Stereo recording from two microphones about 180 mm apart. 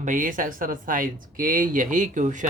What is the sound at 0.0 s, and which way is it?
Speech, 45° right (ahead or behind).